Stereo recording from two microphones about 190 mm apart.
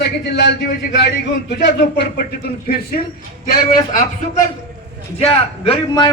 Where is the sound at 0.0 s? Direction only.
65° left (ahead or behind).